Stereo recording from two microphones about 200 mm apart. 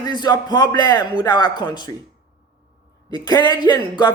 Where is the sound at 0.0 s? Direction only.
20° left (ahead or behind).